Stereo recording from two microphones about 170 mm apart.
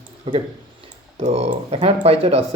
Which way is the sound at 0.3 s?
30° right (ahead or behind).